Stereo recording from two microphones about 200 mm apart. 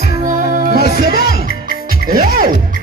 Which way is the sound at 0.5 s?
40° right (ahead or behind).